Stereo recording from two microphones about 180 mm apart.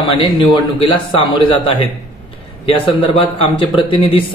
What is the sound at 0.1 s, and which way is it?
Speech, 30° left (ahead or behind).